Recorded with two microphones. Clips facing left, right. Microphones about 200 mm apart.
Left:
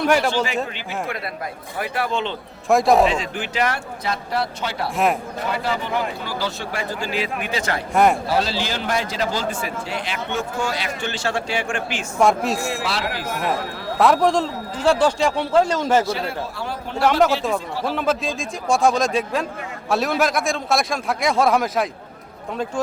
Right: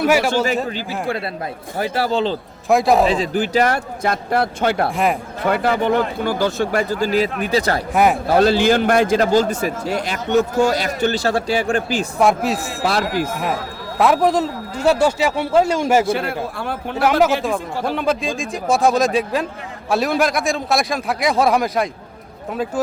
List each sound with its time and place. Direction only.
0.0 s speech: 5° right (ahead or behind)
1.8 s a man's voice: 35° right (ahead or behind)
2.6 s a man's voice: centre (ahead or behind)
3.1 s speech: 35° right (ahead or behind)
7.9 s a man's voice: 5° right (ahead or behind)
8.3 s a man's voice: 55° right (ahead or behind); by 12.0 s 35° right (ahead or behind)
12.2 s a man's voice: centre (ahead or behind)
14.0 s speech: centre (ahead or behind)
16.0 s a man's voice: 55° right (ahead or behind)
17.0 s a man's voice: 5° right (ahead or behind)